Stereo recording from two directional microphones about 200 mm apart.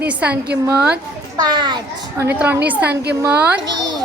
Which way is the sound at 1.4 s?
20° right (ahead or behind).